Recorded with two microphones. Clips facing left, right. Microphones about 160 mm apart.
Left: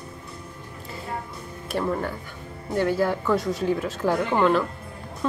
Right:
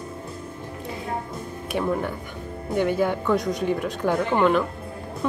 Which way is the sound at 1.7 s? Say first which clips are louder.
Right 1 dB; centre (ahead or behind).